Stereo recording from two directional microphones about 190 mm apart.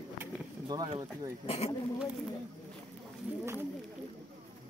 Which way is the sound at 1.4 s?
30° left (ahead or behind).